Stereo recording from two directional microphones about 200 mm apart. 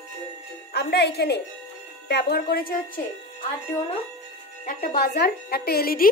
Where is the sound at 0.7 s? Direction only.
55° left (ahead or behind).